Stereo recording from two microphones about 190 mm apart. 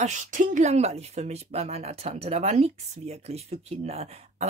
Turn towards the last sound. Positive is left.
turn(degrees=-35)  # may be behind; listen again after turning